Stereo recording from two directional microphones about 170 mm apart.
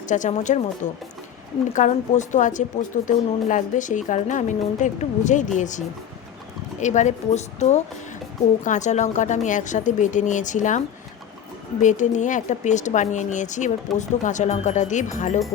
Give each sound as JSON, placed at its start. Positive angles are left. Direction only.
{"t": 0.1, "sound": "a woman's voice", "side_deg": 45}